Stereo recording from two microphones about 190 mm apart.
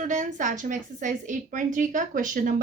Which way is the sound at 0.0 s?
40° right (ahead or behind).